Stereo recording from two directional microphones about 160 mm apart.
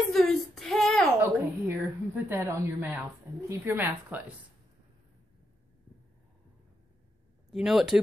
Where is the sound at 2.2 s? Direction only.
15° right (ahead or behind).